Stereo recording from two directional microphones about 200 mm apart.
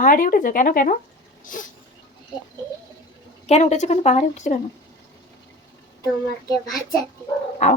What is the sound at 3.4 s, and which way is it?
Speech, 35° left (ahead or behind).